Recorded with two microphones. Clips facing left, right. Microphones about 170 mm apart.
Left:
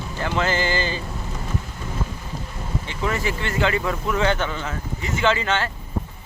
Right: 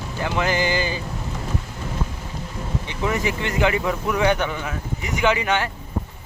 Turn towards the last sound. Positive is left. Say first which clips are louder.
# right 1 dB
turn(degrees=-15)  # may be behind; listen again after turning